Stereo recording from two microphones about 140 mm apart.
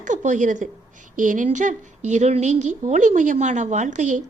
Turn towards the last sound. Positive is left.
turn(degrees=-60)  # may be behind; listen again after turning